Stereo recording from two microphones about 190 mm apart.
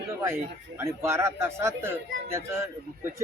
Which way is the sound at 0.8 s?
15° right (ahead or behind).